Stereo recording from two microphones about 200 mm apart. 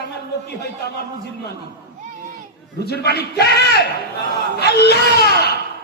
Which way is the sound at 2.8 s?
55° left (ahead or behind).